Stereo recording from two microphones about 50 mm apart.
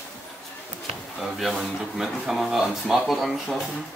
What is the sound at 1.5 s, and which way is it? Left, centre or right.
Speech, centre.